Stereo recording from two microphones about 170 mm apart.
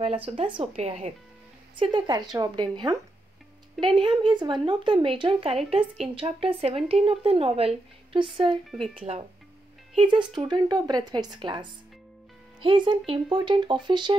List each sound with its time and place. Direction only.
0.0 s a woman's voice: 35° right (ahead or behind)
8.6 s speech: centre (ahead or behind)
9.9 s speech: 30° right (ahead or behind)